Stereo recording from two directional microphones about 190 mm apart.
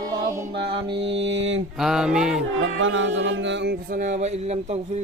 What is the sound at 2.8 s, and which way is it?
Music, 90° right.